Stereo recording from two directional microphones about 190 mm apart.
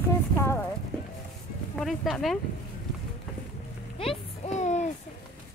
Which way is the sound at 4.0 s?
35° left (ahead or behind).